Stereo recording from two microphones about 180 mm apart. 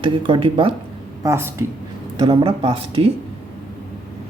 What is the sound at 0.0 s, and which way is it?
Speech, 30° right (ahead or behind).